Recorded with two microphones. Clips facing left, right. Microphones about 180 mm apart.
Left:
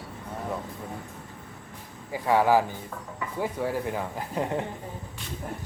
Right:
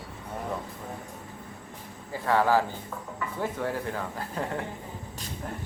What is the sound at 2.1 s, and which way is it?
Speech, 15° left (ahead or behind).